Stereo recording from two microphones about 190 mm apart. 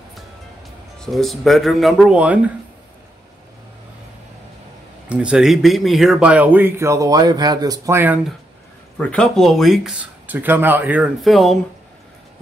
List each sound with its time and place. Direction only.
0.9 s speech: centre (ahead or behind)
5.1 s speech: 5° right (ahead or behind)